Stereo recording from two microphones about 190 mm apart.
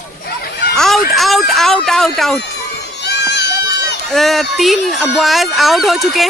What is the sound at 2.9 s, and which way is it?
Crowd, 60° left (ahead or behind).